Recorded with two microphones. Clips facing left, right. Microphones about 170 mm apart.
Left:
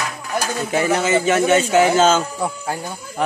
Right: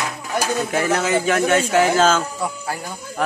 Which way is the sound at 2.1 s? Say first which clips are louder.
Left 2 dB; 30° left (ahead or behind).